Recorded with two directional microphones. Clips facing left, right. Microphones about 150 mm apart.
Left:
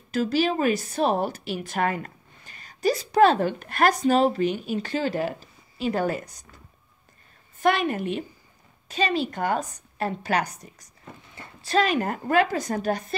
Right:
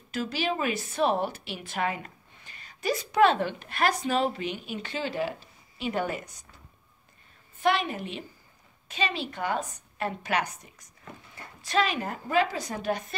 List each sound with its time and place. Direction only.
0.1 s a woman's voice: 40° left (ahead or behind)
7.6 s a woman's voice: 50° left (ahead or behind)
8.8 s a woman's voice: 40° left (ahead or behind)